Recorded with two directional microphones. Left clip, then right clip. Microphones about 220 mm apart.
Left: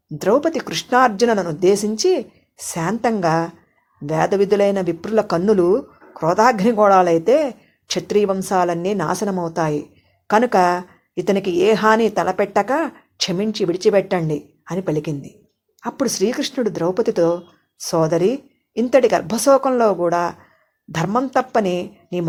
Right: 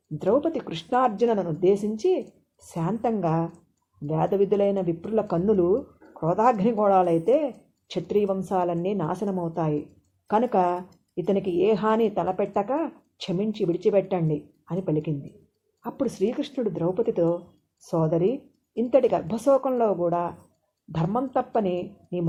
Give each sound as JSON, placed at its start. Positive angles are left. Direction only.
{"t": 0.2, "sound": "speech", "side_deg": 25}